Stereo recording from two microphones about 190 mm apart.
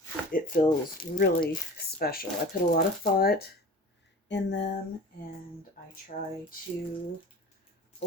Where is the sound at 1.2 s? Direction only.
55° left (ahead or behind).